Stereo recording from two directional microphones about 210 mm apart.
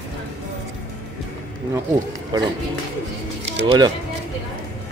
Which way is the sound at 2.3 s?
20° right (ahead or behind).